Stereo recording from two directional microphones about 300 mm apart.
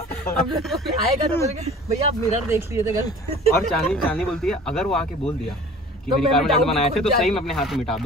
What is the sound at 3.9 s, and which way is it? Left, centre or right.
Speech, centre.